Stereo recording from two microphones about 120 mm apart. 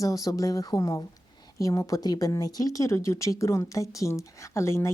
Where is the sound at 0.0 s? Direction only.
30° left (ahead or behind).